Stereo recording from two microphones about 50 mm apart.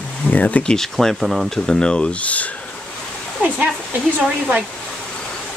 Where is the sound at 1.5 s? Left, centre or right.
Centre.